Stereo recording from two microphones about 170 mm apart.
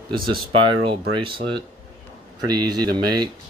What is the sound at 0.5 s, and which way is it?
Speech, 30° right (ahead or behind).